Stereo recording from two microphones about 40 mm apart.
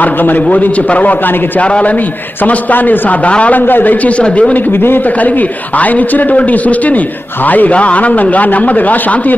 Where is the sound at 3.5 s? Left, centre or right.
Left.